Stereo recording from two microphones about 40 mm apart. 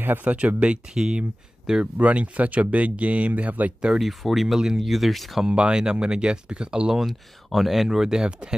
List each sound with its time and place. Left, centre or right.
0.2 s speech: right
0.9 s speech: centre
2.0 s speech: right
4.0 s speech: centre
5.5 s speech: right
6.9 s speech: centre
8.2 s speech: right